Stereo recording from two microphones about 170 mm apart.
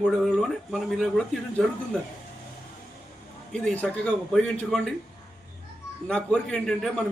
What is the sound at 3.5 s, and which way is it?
A man's voice, 5° left (ahead or behind).